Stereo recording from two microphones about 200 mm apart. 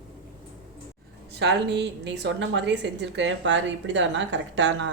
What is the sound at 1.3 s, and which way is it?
A woman's voice, 60° right (ahead or behind).